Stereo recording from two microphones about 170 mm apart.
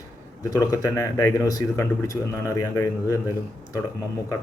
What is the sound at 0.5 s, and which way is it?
A man's voice, 20° left (ahead or behind).